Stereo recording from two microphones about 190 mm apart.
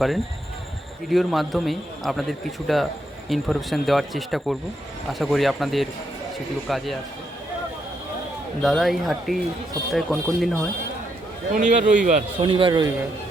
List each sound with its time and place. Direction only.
1.1 s a man's voice: centre (ahead or behind)
8.6 s a man's voice: centre (ahead or behind)
11.5 s a man's voice: 40° right (ahead or behind)
12.4 s a man's voice: 25° right (ahead or behind)